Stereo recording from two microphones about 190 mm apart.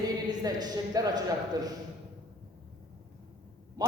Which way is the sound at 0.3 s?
20° right (ahead or behind).